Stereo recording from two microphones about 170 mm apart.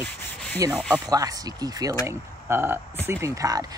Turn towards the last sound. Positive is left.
turn(degrees=-20)  # may be behind; listen again after turning